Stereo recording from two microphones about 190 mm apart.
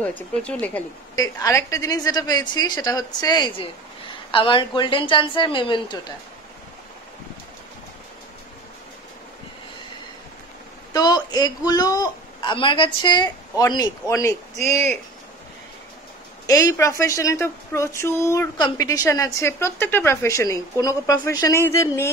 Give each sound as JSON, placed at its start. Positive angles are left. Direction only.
{"t": 0.3, "sound": "a woman's voice", "side_deg": 5}
{"t": 10.9, "sound": "speech", "side_deg": 20}
{"t": 14.6, "sound": "speech", "side_deg": -35}
{"t": 16.4, "sound": "a woman's voice", "side_deg": 15}